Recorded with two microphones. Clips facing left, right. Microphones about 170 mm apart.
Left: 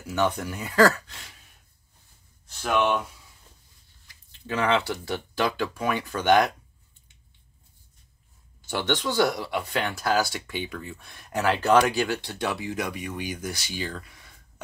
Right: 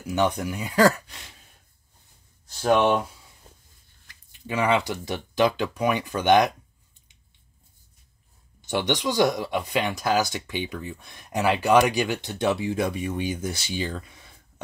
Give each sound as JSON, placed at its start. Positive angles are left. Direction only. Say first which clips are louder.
{"t": 0.0, "sound": "speech", "louder": "right 2 dB", "side_deg": -15}
{"t": 2.4, "sound": "speech", "louder": "right 4 dB", "side_deg": -35}
{"t": 4.3, "sound": "speech", "louder": "right 1 dB", "side_deg": -10}
{"t": 8.5, "sound": "speech", "louder": "right 2 dB", "side_deg": -20}